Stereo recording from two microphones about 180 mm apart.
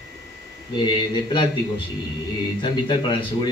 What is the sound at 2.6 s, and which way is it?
Speech, 25° left (ahead or behind).